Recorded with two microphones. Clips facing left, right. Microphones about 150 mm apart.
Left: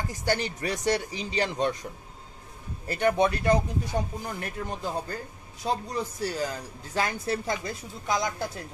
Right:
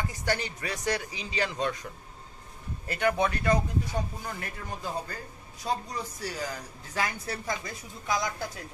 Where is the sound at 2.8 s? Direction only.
30° left (ahead or behind).